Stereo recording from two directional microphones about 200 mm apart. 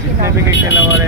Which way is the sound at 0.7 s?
75° left (ahead or behind).